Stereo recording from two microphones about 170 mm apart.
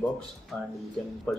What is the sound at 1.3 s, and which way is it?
Speech, 5° left (ahead or behind).